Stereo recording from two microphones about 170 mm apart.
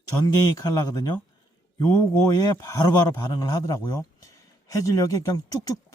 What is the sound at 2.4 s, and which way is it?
Speech, 20° left (ahead or behind).